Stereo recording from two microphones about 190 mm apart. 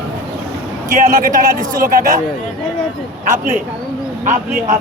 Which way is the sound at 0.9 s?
45° right (ahead or behind).